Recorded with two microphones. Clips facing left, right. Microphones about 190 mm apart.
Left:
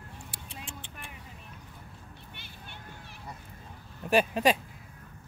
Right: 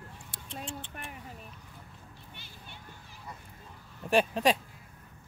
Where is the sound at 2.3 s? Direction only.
65° left (ahead or behind).